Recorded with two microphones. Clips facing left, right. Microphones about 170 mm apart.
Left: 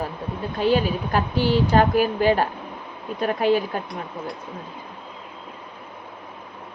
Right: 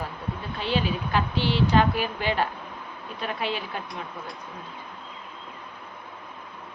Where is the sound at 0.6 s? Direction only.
45° left (ahead or behind).